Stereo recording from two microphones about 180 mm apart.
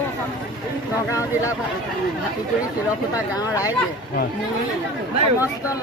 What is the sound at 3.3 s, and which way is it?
Speech, 20° left (ahead or behind).